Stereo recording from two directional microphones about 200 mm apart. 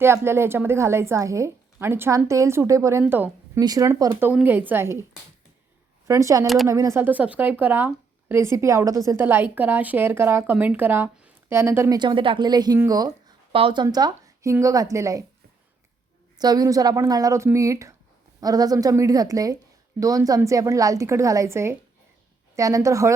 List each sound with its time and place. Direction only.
0.0 s a woman's voice: 10° right (ahead or behind)
6.1 s speech: 15° right (ahead or behind)
16.4 s speech: 20° right (ahead or behind)